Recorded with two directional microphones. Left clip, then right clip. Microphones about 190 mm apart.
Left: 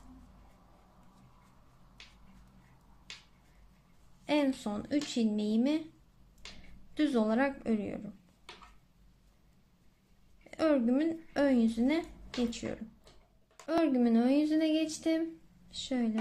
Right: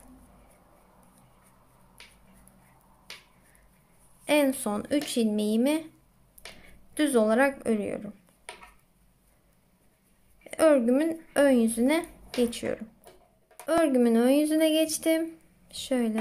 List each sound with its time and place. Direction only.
4.2 s speech: 15° right (ahead or behind)
6.9 s speech: 15° right (ahead or behind)
10.4 s speech: 15° right (ahead or behind)